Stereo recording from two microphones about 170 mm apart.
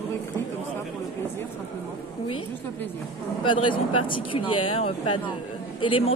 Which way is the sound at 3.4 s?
30° left (ahead or behind).